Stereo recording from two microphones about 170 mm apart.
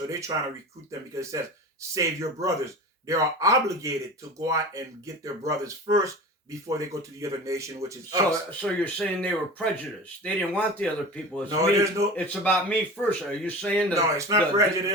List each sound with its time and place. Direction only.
0.1 s speech: 20° right (ahead or behind)
8.4 s speech: 10° left (ahead or behind)
11.4 s speech: 20° right (ahead or behind)
12.1 s speech: 10° left (ahead or behind)
13.9 s speech: 20° right (ahead or behind)